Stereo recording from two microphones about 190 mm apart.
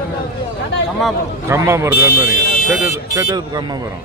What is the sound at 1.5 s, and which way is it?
Speech, 15° right (ahead or behind).